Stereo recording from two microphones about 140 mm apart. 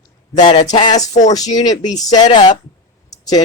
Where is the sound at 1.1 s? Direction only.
55° left (ahead or behind).